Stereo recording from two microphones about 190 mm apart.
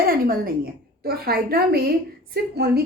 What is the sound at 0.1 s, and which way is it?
A woman's voice, 50° right (ahead or behind).